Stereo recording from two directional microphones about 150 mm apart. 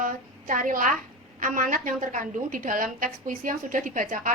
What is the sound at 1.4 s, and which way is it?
A woman's voice, 60° right (ahead or behind).